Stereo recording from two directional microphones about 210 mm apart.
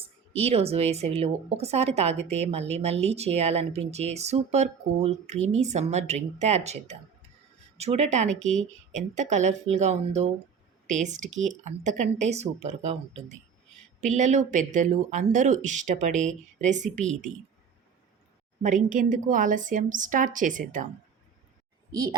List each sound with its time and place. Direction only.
0.0 s speech: 30° right (ahead or behind)
18.6 s speech: 40° right (ahead or behind)